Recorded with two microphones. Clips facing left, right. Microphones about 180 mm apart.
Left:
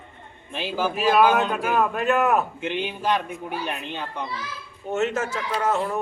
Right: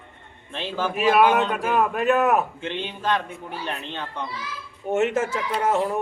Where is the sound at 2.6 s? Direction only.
10° left (ahead or behind).